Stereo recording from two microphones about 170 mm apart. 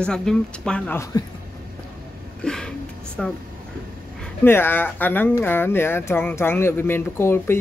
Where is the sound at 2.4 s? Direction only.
5° left (ahead or behind).